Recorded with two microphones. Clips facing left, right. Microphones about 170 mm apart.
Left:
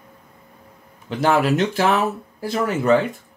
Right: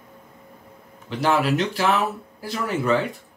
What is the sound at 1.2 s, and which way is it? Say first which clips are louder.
Speech: left 3 dB; 45° left (ahead or behind).